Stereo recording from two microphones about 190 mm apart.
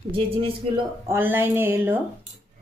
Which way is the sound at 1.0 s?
10° right (ahead or behind).